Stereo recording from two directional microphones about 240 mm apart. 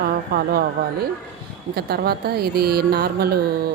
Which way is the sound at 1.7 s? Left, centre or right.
Right.